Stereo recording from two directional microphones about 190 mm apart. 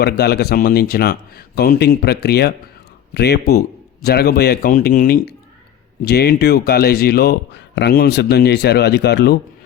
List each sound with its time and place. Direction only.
0.0 s speech: 55° left (ahead or behind)